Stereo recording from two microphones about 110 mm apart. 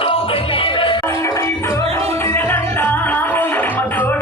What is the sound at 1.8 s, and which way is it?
Music, 65° right (ahead or behind).